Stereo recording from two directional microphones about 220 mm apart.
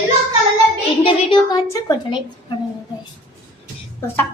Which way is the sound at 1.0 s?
20° left (ahead or behind).